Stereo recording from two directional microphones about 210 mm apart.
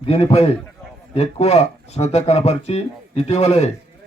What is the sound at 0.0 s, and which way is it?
A man's voice, 25° left (ahead or behind).